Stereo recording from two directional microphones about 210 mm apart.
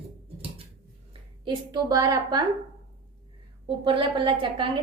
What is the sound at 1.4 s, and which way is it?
Speech, 20° right (ahead or behind).